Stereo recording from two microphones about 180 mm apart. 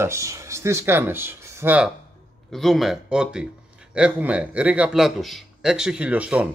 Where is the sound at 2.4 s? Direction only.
Centre (ahead or behind).